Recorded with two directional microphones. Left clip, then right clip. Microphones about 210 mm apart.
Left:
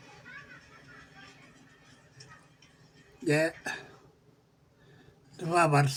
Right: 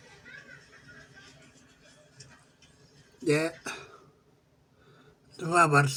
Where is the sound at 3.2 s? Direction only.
Centre (ahead or behind).